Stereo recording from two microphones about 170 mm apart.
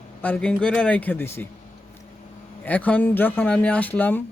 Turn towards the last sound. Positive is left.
turn(degrees=10)  # may be behind; listen again after turning